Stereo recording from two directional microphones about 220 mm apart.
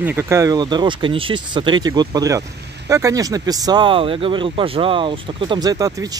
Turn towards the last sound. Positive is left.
turn(degrees=-15)  # may be behind; listen again after turning